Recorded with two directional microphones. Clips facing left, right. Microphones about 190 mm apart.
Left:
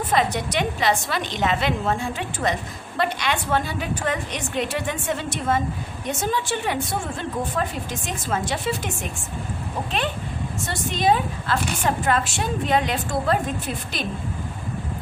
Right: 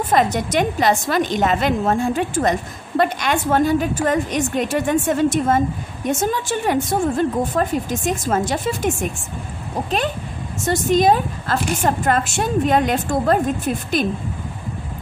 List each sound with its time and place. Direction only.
0.1 s a woman's voice: 45° right (ahead or behind)